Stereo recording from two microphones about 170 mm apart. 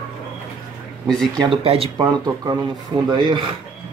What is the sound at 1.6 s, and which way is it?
Speech, 35° right (ahead or behind).